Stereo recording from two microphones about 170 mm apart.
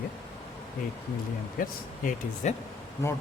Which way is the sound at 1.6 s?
50° left (ahead or behind).